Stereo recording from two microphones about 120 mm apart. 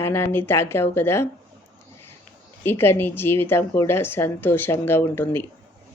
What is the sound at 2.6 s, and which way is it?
Speech, 20° left (ahead or behind).